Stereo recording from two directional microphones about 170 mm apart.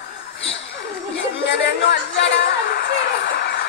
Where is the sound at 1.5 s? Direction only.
90° left.